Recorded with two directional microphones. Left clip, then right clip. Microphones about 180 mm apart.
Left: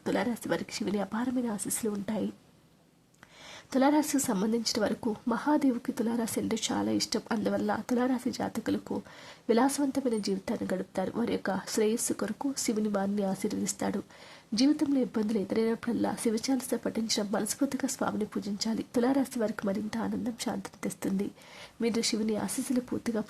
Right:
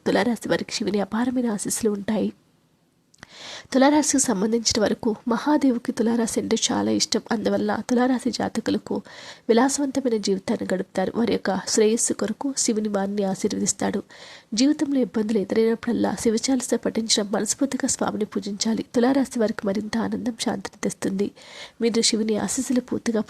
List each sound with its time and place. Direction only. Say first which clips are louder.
0.0 s speech: right 9 dB; 25° right (ahead or behind)
3.5 s speech: right 8 dB; 30° right (ahead or behind)